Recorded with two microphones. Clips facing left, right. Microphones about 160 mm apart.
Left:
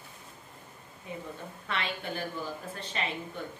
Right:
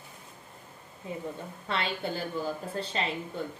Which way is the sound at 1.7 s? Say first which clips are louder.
Right 3 dB; 30° right (ahead or behind).